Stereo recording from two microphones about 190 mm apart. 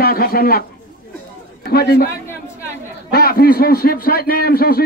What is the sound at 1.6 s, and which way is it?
Speech, 55° left (ahead or behind).